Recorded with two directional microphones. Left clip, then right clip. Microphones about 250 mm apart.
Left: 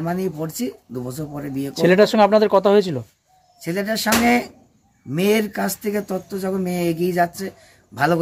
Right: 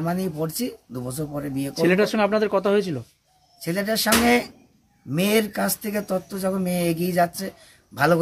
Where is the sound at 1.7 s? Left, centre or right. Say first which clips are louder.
Left 6 dB; left.